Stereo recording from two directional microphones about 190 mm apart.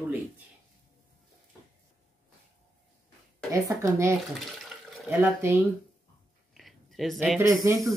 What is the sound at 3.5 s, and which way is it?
Speech, 15° right (ahead or behind).